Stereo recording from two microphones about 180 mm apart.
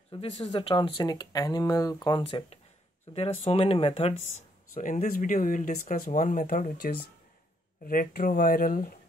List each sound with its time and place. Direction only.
0.1 s speech: 25° left (ahead or behind)
4.1 s speech: 90° left
4.7 s speech: 45° left (ahead or behind)